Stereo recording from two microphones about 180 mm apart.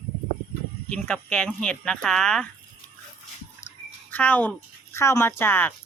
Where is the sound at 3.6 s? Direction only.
40° left (ahead or behind).